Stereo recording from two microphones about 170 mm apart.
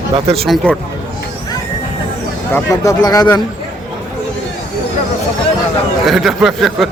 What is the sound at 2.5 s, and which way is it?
Speech, 15° left (ahead or behind).